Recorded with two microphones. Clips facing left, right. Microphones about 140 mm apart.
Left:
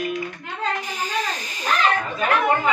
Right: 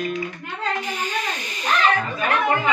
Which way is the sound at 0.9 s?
40° left (ahead or behind).